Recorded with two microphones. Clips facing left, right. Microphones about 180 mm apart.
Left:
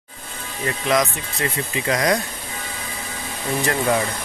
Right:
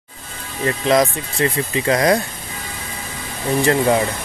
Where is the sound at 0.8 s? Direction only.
30° right (ahead or behind).